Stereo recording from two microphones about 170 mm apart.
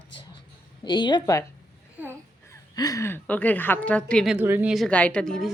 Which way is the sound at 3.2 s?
10° left (ahead or behind).